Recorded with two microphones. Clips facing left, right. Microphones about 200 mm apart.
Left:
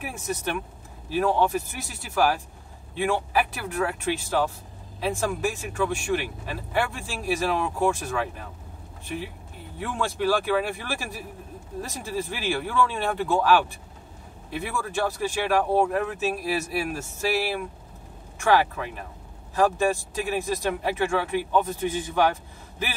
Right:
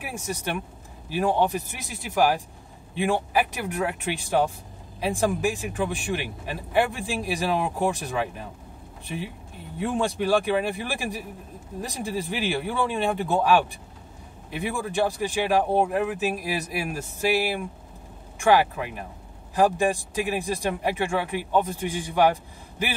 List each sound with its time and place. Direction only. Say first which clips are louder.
0.0 s speech: left 1 dB; 15° right (ahead or behind)
9.8 s speech: right 3 dB; 15° right (ahead or behind)